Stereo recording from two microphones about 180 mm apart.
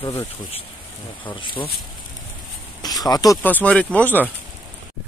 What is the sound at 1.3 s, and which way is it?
Speech, 30° left (ahead or behind).